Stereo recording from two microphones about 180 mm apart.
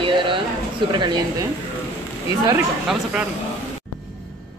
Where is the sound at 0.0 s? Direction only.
30° right (ahead or behind).